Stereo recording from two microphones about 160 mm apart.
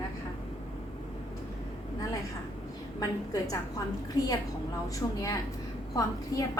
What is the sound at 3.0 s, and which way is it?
Speech, 20° left (ahead or behind).